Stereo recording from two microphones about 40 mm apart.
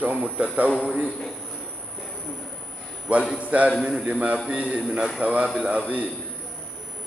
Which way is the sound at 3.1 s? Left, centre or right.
Right.